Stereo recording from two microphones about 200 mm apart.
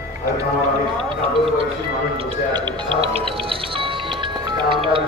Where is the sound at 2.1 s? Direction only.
25° right (ahead or behind).